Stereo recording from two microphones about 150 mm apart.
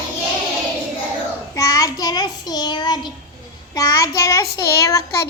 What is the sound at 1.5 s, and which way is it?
Child singing, 25° left (ahead or behind).